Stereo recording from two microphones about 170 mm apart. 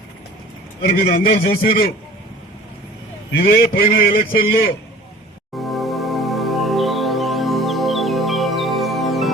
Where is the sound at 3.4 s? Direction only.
60° left (ahead or behind).